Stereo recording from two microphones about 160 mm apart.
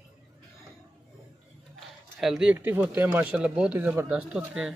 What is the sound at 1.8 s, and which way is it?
Speech, centre (ahead or behind).